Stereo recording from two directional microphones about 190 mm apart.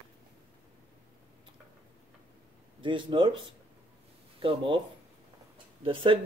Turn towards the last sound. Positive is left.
turn(degrees=-25)  # may be behind; listen again after turning